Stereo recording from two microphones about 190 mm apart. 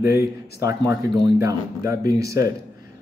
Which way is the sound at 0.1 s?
15° right (ahead or behind).